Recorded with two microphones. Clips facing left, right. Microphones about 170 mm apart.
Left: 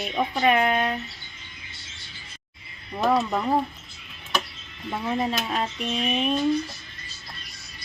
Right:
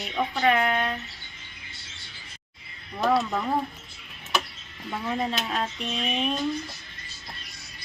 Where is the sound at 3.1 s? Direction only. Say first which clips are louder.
Left 1 dB; 20° left (ahead or behind).